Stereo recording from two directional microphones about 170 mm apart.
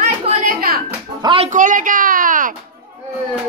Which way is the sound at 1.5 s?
50° right (ahead or behind).